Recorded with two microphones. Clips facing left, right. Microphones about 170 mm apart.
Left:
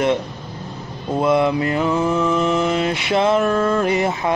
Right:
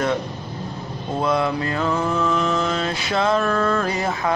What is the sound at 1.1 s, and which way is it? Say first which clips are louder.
Mantra: left 4 dB; 20° left (ahead or behind).